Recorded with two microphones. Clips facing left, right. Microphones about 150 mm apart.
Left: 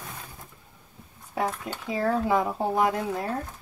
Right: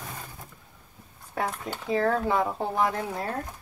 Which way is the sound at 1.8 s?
10° left (ahead or behind).